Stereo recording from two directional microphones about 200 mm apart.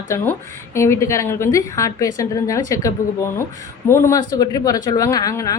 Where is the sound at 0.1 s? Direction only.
15° left (ahead or behind).